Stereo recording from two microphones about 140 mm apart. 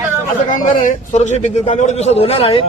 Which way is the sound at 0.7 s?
70° left (ahead or behind).